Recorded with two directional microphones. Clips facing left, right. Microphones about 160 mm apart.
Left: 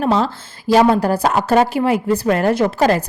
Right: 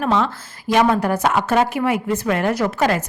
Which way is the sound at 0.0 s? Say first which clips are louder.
Left 2 dB; 35° left (ahead or behind).